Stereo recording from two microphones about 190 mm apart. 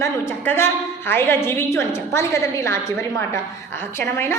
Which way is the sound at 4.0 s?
10° left (ahead or behind).